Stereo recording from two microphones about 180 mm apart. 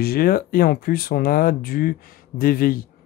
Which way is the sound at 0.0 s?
55° left (ahead or behind).